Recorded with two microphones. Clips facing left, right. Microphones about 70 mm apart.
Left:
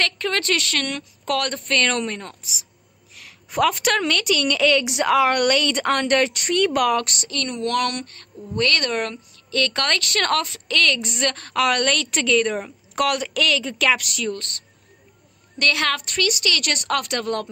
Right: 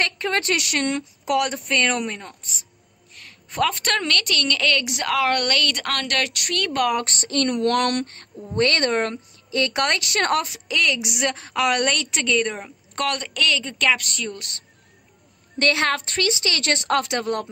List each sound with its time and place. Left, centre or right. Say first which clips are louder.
0.0 s a woman's voice: even; right
1.2 s a woman's voice: right 1 dB; centre
7.1 s a woman's voice: right 5 dB; right
9.5 s a woman's voice: right 1 dB; centre
14.3 s a woman's voice: left 5 dB; centre
15.6 s a woman's voice: right 1 dB; right